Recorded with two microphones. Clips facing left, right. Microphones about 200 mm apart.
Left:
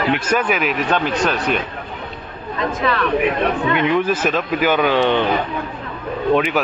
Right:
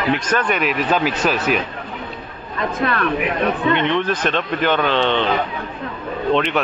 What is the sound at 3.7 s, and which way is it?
A man's voice, 5° left (ahead or behind).